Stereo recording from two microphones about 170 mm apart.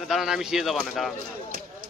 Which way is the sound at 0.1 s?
Centre (ahead or behind).